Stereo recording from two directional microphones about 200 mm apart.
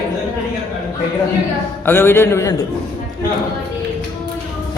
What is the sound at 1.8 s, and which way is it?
Music, 10° left (ahead or behind).